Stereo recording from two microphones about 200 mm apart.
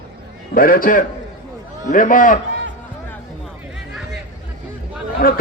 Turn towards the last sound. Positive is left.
turn(degrees=45)  # may be behind; listen again after turning